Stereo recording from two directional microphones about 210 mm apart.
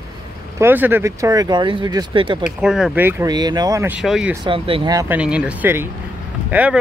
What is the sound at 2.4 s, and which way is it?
Speech, centre (ahead or behind).